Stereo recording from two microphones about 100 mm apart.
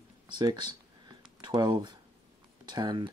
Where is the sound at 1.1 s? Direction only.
45° right (ahead or behind).